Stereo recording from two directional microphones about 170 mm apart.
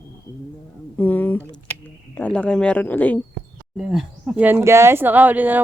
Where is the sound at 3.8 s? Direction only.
Centre (ahead or behind).